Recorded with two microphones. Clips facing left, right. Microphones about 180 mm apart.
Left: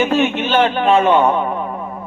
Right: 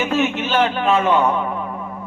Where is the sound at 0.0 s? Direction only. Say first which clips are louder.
Left 4 dB; 30° left (ahead or behind).